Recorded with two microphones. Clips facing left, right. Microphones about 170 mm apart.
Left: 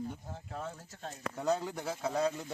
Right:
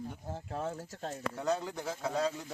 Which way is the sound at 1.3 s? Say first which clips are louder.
Left 3 dB; centre (ahead or behind).